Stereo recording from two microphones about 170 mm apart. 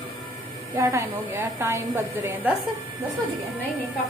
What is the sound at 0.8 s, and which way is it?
A woman's voice, 15° right (ahead or behind).